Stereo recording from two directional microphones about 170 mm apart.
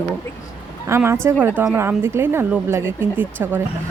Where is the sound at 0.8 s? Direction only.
15° right (ahead or behind).